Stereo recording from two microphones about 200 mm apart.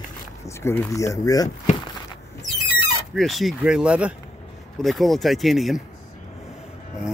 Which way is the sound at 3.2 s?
Centre (ahead or behind).